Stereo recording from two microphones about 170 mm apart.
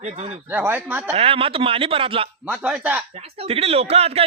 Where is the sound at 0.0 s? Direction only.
40° right (ahead or behind).